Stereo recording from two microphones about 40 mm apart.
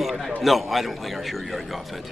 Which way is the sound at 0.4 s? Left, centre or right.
Centre.